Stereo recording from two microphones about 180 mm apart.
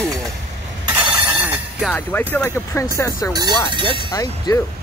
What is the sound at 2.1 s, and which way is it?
Speech, 10° left (ahead or behind).